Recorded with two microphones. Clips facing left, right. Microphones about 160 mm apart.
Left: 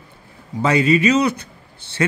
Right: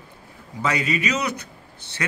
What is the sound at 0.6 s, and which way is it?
A man's voice, 30° left (ahead or behind).